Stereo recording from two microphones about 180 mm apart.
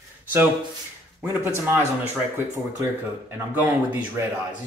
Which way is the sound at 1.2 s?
15° right (ahead or behind).